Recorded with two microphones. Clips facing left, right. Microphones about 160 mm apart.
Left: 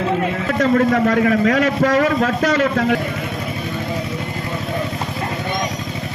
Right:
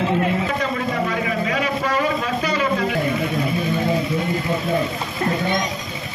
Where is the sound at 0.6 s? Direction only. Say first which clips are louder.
Left 8 dB; 65° left (ahead or behind).